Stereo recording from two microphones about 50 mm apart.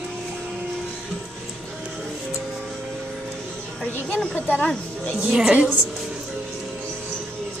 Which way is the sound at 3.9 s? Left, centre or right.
Left.